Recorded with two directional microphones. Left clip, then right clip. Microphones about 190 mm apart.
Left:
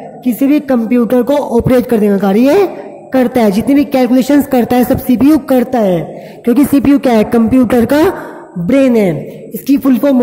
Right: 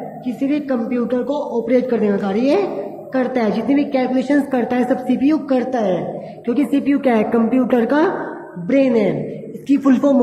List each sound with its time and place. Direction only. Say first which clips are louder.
0.2 s speech: left 10 dB; 60° left (ahead or behind)
9.7 s speech: left 4 dB; 40° left (ahead or behind)